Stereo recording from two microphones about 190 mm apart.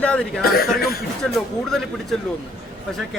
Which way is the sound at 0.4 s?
55° left (ahead or behind).